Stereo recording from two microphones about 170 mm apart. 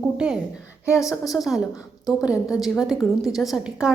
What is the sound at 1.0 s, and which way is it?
Speech, 20° left (ahead or behind).